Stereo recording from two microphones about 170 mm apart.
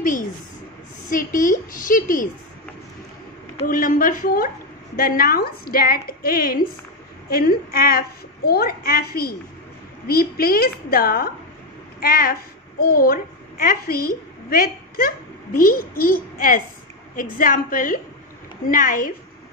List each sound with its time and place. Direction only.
1.0 s a woman's voice: 55° left (ahead or behind)
3.6 s a woman's voice: 55° left (ahead or behind)